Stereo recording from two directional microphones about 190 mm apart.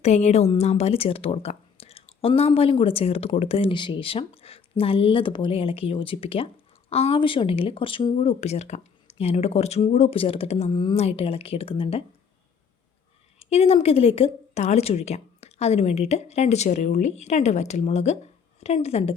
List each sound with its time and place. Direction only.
0.0 s speech: 35° left (ahead or behind)
13.4 s speech: 30° left (ahead or behind)